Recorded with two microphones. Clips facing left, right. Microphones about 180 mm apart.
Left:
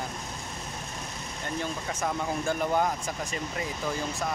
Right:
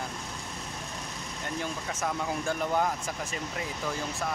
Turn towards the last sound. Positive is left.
turn(degrees=0)  # may be behind; listen again after turning